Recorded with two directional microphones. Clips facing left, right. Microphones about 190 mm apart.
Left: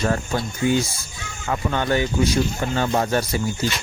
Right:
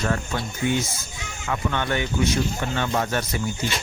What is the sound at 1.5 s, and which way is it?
Speech, 35° left (ahead or behind).